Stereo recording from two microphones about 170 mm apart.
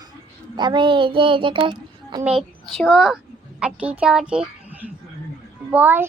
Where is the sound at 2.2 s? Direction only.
5° right (ahead or behind).